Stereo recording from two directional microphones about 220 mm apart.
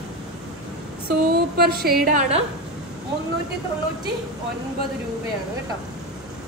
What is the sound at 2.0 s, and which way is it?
Speech, 35° right (ahead or behind).